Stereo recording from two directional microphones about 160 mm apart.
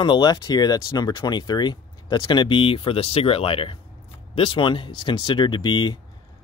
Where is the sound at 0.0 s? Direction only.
25° left (ahead or behind).